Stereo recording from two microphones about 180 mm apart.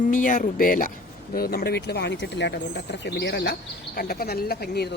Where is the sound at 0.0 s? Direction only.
45° left (ahead or behind).